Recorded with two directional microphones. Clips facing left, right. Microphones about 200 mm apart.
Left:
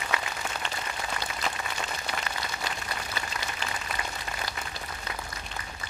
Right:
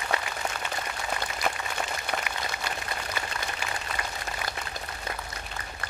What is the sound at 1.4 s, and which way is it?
Applause, 55° right (ahead or behind).